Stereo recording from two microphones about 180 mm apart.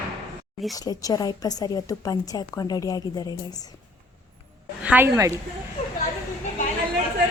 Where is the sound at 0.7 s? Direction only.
20° left (ahead or behind).